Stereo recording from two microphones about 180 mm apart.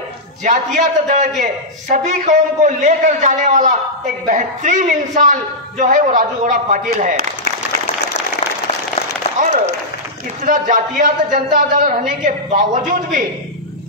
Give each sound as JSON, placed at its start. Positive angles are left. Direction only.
{"t": 0.4, "sound": "a man's voice", "side_deg": -40}
{"t": 9.4, "sound": "applause", "side_deg": -50}
{"t": 10.4, "sound": "a man's voice", "side_deg": -45}